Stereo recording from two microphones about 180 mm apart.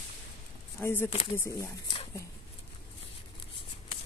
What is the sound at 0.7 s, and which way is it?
Speech, 10° left (ahead or behind).